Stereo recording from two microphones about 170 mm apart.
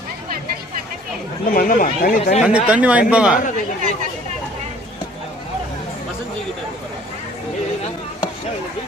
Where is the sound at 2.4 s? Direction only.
5° right (ahead or behind).